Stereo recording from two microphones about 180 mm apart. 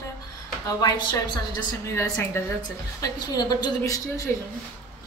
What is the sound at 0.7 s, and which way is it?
A woman's voice, 20° left (ahead or behind).